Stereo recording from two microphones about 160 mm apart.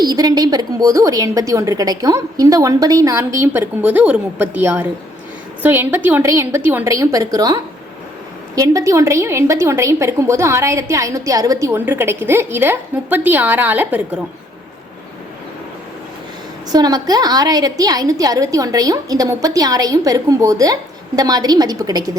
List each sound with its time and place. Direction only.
0.0 s a woman's voice: 25° right (ahead or behind)
16.7 s a woman's voice: 25° right (ahead or behind)